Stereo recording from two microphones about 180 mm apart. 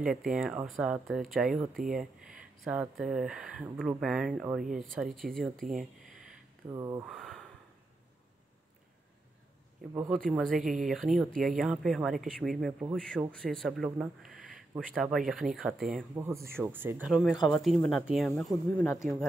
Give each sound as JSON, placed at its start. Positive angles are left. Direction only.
{"t": 0.3, "sound": "speech", "side_deg": -5}
{"t": 6.7, "sound": "speech", "side_deg": -20}
{"t": 7.1, "sound": "a sound", "side_deg": 0}
{"t": 10.1, "sound": "speech", "side_deg": 5}
{"t": 16.2, "sound": "speech", "side_deg": -15}